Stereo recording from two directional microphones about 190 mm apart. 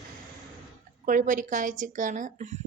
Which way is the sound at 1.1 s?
45° right (ahead or behind).